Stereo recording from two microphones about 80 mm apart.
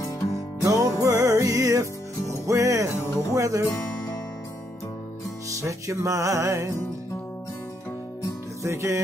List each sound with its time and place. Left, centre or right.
0.7 s music: right
3.0 s music: left
3.3 s speech: right
3.7 s music: centre
5.5 s music: right
8.6 s music: right